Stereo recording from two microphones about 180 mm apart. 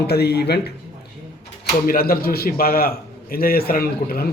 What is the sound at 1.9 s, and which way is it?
A man's voice, 55° left (ahead or behind).